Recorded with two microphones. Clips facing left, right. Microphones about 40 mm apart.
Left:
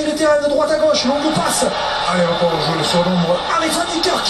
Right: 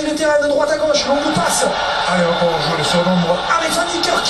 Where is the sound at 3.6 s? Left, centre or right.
Centre.